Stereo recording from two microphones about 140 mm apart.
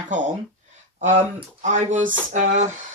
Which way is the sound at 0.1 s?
65° right (ahead or behind).